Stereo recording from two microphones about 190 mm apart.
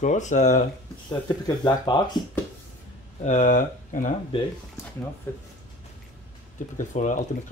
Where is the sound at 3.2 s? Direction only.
40° left (ahead or behind).